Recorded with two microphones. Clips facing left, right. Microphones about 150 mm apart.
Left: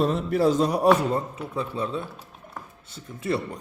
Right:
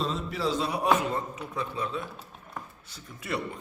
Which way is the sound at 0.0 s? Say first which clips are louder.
Left 8 dB; 55° left (ahead or behind).